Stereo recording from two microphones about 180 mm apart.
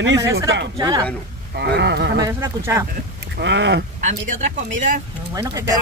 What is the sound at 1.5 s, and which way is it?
Speech, 70° right (ahead or behind).